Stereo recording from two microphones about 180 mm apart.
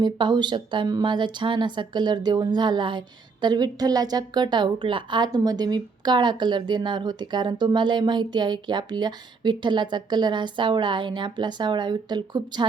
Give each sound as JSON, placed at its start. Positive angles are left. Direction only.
{"t": 0.0, "sound": "a woman's voice", "side_deg": -25}